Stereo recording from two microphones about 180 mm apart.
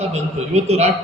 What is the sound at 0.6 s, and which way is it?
Speech, 35° right (ahead or behind).